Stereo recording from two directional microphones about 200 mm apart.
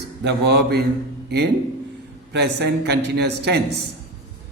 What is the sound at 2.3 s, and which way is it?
A man's voice, 55° right (ahead or behind).